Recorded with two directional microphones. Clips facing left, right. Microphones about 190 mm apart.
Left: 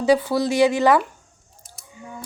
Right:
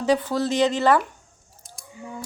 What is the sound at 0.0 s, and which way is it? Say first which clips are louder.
A woman's voice: left 3 dB; 10° left (ahead or behind).